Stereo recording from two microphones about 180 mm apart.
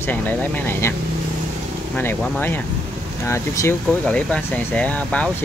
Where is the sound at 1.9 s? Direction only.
10° left (ahead or behind).